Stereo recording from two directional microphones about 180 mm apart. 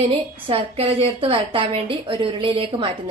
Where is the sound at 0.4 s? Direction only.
30° right (ahead or behind).